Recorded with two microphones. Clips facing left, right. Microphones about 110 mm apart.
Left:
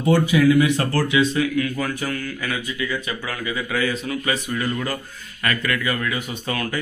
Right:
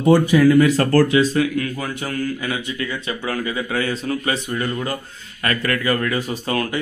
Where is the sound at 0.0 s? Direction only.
40° right (ahead or behind).